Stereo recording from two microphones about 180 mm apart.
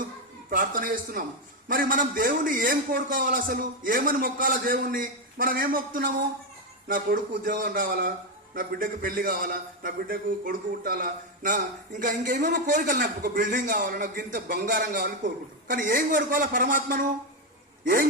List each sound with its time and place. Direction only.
0.5 s a man's voice: 50° right (ahead or behind)